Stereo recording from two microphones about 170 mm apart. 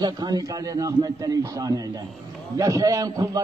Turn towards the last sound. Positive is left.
turn(degrees=-20)  # may be behind; listen again after turning